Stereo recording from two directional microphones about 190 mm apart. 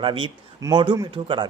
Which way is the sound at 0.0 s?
25° right (ahead or behind).